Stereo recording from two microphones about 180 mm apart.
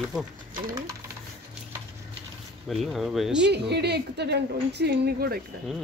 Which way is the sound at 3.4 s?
65° right (ahead or behind).